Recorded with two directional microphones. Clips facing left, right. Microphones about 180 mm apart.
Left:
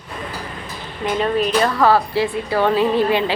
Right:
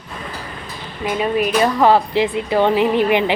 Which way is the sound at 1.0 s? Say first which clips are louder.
Even; 10° right (ahead or behind).